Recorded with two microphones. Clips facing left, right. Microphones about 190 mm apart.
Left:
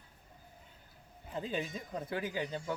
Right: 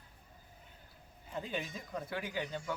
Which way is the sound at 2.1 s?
35° left (ahead or behind).